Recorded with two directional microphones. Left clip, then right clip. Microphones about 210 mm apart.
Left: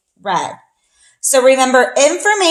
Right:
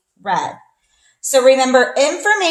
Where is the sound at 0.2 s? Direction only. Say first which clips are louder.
Left 1 dB; 40° left (ahead or behind).